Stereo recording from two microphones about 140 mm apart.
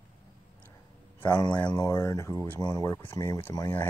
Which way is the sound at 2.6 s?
25° left (ahead or behind).